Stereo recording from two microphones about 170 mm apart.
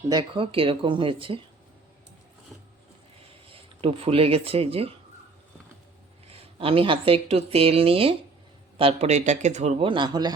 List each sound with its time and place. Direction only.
0.1 s speech: 30° right (ahead or behind)
3.5 s speech: 35° right (ahead or behind)
6.2 s speech: 35° right (ahead or behind)